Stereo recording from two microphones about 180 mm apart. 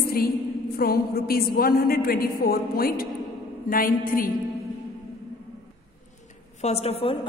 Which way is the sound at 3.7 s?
50° left (ahead or behind).